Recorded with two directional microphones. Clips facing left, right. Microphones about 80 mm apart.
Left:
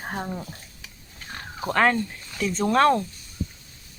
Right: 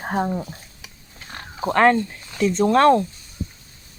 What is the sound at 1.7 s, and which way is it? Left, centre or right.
Speech, centre.